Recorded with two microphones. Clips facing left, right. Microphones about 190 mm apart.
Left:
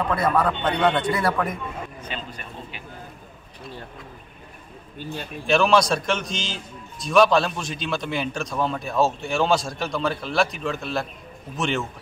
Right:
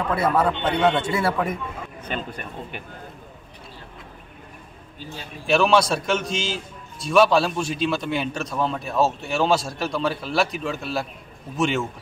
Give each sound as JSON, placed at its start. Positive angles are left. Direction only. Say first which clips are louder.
{"t": 0.2, "sound": "a man's voice", "louder": "right 2 dB", "side_deg": -25}
{"t": 0.7, "sound": "a man's voice", "louder": "right 1 dB", "side_deg": -5}
{"t": 1.0, "sound": "a man's voice", "louder": "even", "side_deg": -25}
{"t": 2.0, "sound": "speech", "louder": "right 4 dB", "side_deg": -50}
{"t": 5.5, "sound": "a man's voice", "louder": "even", "side_deg": -5}